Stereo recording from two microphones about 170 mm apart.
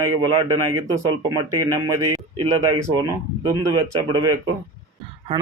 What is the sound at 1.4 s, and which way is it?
Speech, 20° right (ahead or behind).